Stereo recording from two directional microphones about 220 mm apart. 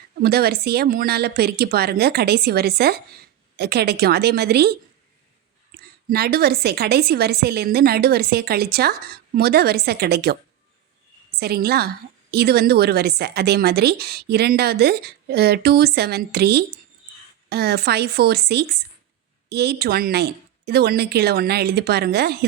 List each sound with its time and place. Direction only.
0.2 s a woman's voice: 45° right (ahead or behind)
6.1 s a woman's voice: 45° right (ahead or behind)
11.3 s a woman's voice: 45° right (ahead or behind)